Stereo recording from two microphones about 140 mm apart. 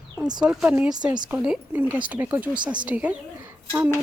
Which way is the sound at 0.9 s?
30° right (ahead or behind).